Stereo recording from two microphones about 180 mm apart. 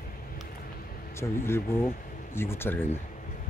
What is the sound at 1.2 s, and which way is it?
Speech, 15° left (ahead or behind).